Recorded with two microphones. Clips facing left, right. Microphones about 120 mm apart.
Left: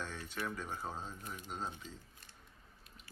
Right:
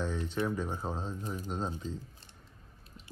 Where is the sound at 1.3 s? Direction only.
35° right (ahead or behind).